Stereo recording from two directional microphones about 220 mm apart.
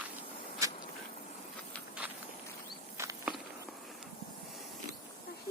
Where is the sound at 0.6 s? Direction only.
15° right (ahead or behind).